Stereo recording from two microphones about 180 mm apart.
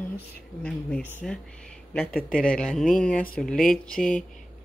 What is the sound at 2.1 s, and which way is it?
Speech, 50° left (ahead or behind).